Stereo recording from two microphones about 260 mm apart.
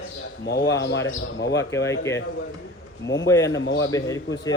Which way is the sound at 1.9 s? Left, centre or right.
Centre.